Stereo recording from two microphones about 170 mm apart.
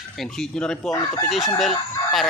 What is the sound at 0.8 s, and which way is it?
Chicken, 20° left (ahead or behind).